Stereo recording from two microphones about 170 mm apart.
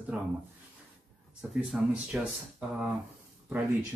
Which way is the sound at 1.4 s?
Centre (ahead or behind).